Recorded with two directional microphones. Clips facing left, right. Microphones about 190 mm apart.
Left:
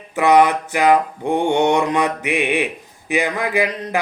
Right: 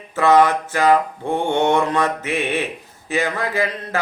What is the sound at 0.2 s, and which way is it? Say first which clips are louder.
Mantra: left 1 dB; 15° left (ahead or behind).